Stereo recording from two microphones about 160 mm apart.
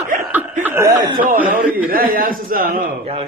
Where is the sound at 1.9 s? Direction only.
65° right (ahead or behind).